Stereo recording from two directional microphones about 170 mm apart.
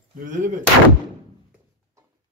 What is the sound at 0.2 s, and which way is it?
Speech, 50° right (ahead or behind).